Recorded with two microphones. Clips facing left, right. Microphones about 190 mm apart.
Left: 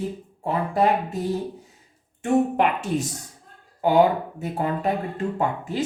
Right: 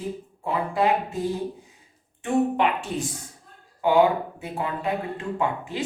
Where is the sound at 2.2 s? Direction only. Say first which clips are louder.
Left 2 dB; 45° left (ahead or behind).